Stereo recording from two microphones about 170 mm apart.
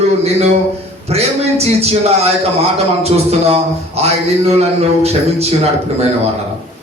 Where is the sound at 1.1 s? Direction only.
40° right (ahead or behind).